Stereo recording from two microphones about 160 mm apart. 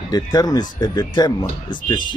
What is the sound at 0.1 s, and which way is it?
Speech, 25° left (ahead or behind).